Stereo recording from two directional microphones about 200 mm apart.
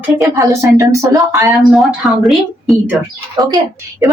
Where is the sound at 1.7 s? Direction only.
Centre (ahead or behind).